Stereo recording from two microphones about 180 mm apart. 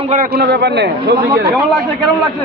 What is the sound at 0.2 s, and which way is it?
Speech, 65° right (ahead or behind).